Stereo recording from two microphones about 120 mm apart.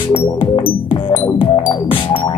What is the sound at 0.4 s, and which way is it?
Music, 40° left (ahead or behind).